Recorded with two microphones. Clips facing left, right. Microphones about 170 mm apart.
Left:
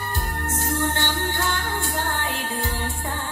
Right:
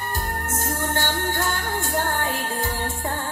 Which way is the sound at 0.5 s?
45° right (ahead or behind).